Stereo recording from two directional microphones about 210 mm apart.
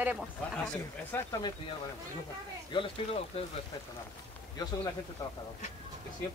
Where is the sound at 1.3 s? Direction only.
20° left (ahead or behind).